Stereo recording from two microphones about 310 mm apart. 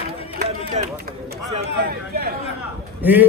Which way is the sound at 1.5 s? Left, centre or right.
Right.